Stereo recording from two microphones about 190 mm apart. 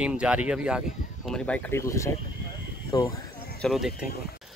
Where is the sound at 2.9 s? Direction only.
20° left (ahead or behind).